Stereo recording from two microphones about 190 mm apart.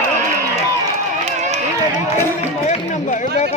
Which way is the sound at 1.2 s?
35° right (ahead or behind).